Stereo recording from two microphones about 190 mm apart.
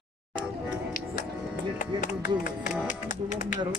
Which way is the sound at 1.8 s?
40° left (ahead or behind).